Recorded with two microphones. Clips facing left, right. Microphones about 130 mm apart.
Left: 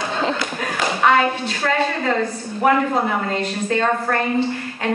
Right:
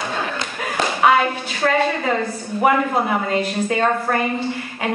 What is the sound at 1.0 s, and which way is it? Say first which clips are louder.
A woman's voice: even; 5° right (ahead or behind).